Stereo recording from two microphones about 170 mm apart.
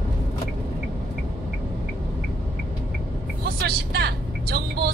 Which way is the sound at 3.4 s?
70° right (ahead or behind).